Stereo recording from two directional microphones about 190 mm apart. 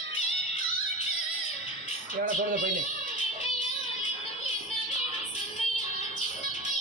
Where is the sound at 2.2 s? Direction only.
45° right (ahead or behind).